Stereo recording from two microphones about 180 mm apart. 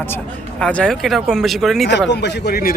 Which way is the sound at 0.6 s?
5° left (ahead or behind).